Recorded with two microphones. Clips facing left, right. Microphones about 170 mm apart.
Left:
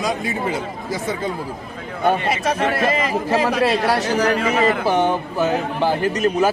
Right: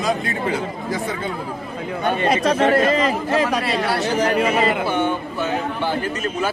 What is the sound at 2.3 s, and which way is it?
Speech, 45° right (ahead or behind).